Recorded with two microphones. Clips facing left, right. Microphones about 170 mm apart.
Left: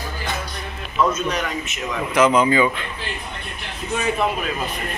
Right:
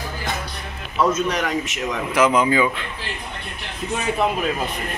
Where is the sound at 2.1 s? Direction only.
10° right (ahead or behind).